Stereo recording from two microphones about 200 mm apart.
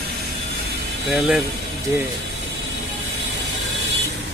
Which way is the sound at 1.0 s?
Centre (ahead or behind).